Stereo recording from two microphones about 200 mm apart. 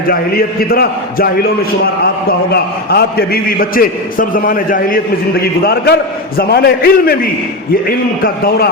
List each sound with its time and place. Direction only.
0.1 s a man's voice: 50° left (ahead or behind)
2.5 s a man's voice: 50° left (ahead or behind)